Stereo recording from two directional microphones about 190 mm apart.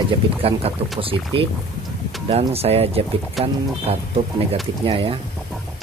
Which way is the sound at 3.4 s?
Centre (ahead or behind).